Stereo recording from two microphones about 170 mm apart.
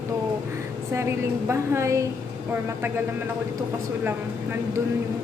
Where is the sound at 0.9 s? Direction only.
15° right (ahead or behind).